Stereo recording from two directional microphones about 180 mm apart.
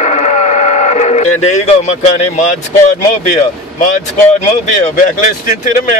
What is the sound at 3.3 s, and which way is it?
Speech, 50° left (ahead or behind).